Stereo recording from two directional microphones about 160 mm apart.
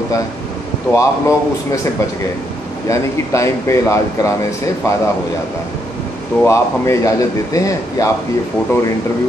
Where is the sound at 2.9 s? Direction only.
20° left (ahead or behind).